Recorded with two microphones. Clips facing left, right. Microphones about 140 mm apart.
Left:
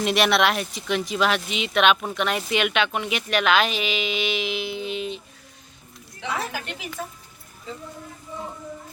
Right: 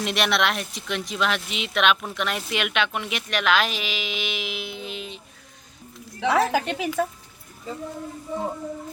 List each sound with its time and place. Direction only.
0.0 s speech: centre (ahead or behind)
6.1 s speech: 70° right (ahead or behind)